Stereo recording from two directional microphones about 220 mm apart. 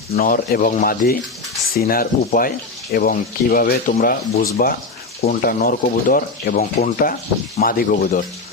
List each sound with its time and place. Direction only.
0.2 s speech: 40° left (ahead or behind)